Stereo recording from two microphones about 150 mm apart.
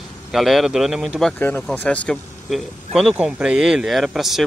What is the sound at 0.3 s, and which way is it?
Speech, centre (ahead or behind).